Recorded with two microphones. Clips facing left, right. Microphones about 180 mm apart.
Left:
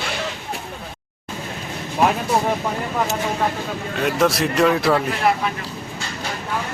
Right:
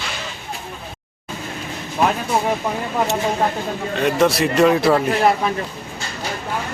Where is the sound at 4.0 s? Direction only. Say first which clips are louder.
Right 2 dB; centre (ahead or behind).